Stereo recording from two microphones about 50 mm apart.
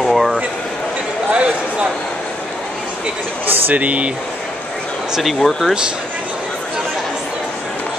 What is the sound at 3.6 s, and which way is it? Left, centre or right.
Speech, right.